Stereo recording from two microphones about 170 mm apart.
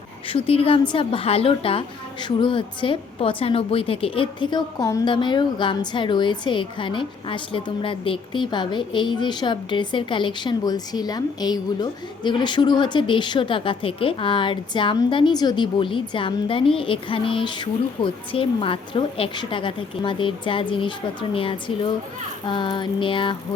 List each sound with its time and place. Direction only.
0.3 s a woman's voice: 35° left (ahead or behind)